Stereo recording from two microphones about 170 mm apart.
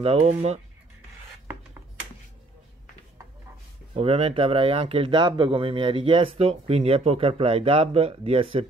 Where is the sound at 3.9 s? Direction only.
35° right (ahead or behind).